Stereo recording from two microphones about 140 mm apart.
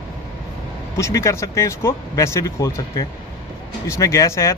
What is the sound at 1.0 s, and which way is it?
Speech, 20° left (ahead or behind).